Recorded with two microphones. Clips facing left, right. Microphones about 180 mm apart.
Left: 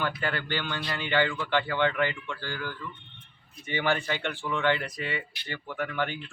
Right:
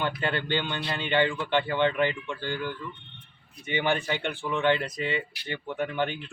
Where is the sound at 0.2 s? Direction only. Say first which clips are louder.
Right 3 dB; 25° right (ahead or behind).